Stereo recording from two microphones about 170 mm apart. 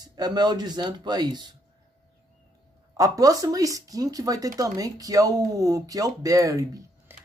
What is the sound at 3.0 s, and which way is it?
A man's voice, 20° right (ahead or behind).